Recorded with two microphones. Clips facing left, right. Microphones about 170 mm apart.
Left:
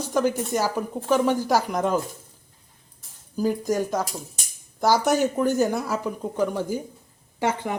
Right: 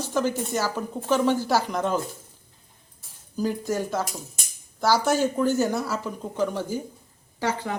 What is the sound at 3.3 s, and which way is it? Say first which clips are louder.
Speech: left 3 dB; 10° left (ahead or behind).